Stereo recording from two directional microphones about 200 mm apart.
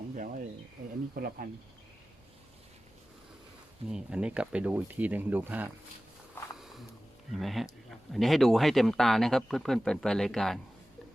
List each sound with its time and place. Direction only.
1.1 s speech: 50° right (ahead or behind)
3.8 s speech: 5° right (ahead or behind)
7.3 s speech: centre (ahead or behind)